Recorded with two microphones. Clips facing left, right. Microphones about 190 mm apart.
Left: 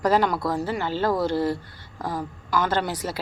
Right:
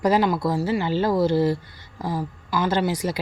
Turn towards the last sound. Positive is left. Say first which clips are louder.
# right 3 dB
turn(degrees=-10)  # may be behind; listen again after turning